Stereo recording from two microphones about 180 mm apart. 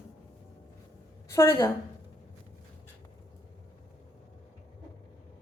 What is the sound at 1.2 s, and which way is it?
Speech, 15° left (ahead or behind).